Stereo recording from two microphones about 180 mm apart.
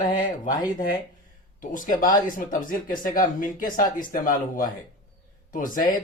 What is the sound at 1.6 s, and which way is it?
Speech, 45° left (ahead or behind).